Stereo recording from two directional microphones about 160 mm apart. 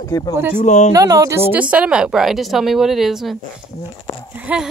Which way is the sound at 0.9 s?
20° right (ahead or behind).